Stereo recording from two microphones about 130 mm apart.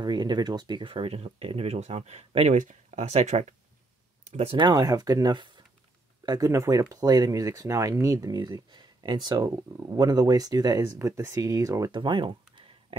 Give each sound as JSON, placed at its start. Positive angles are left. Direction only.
{"t": 0.0, "sound": "speech", "side_deg": -35}
{"t": 2.6, "sound": "speech", "side_deg": -70}
{"t": 4.6, "sound": "speech", "side_deg": -30}
{"t": 11.9, "sound": "speech", "side_deg": -40}